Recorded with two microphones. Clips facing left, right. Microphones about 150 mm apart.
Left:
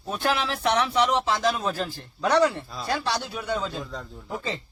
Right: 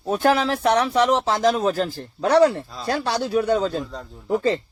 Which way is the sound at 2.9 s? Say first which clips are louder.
Right 7 dB; 50° right (ahead or behind).